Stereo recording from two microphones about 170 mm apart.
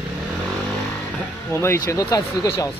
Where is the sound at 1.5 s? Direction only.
15° left (ahead or behind).